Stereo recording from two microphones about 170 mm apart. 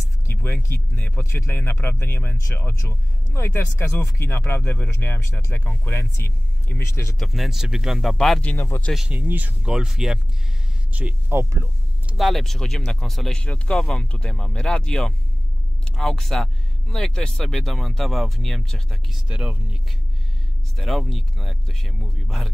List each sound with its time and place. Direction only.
0.3 s speech: 15° left (ahead or behind)
7.2 s speech: centre (ahead or behind)
8.5 s speech: 15° left (ahead or behind)
8.9 s speech: 5° right (ahead or behind)
12.1 s speech: centre (ahead or behind)